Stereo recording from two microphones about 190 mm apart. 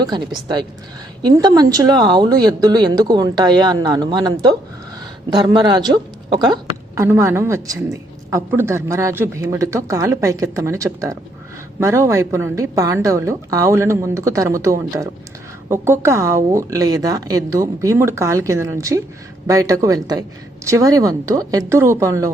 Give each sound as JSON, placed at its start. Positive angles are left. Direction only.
{"t": 0.0, "sound": "speech", "side_deg": -20}